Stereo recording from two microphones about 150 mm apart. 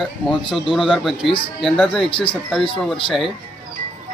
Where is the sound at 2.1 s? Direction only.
35° left (ahead or behind).